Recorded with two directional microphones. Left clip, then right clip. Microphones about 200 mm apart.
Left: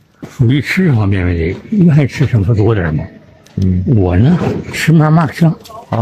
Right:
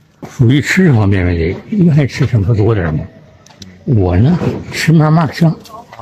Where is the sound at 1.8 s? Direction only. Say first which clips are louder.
Left 1 dB; 5° left (ahead or behind).